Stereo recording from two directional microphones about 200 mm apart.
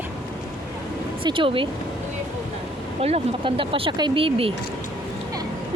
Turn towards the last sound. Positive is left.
turn(degrees=-25)  # may be behind; listen again after turning